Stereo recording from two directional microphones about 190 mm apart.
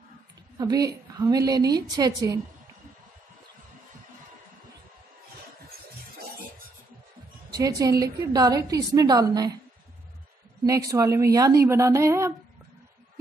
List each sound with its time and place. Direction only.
0.6 s a woman's voice: 20° right (ahead or behind)
7.5 s a woman's voice: 20° right (ahead or behind)
10.6 s speech: 20° right (ahead or behind)